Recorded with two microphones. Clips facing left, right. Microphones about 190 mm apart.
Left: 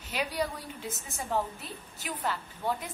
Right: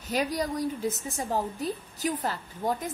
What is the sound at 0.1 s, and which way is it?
A woman's voice, 40° right (ahead or behind).